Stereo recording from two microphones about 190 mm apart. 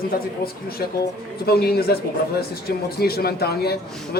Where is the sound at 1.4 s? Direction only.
55° left (ahead or behind).